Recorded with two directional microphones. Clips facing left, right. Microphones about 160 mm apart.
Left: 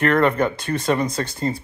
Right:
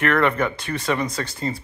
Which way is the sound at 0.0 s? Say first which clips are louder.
Left 2 dB; 35° left (ahead or behind).